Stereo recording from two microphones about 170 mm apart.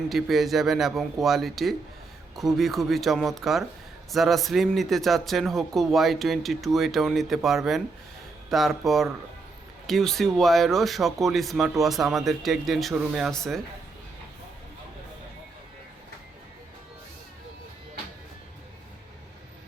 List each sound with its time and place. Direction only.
0.1 s speech: centre (ahead or behind)